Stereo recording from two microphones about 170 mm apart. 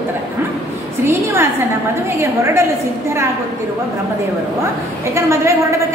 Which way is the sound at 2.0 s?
15° right (ahead or behind).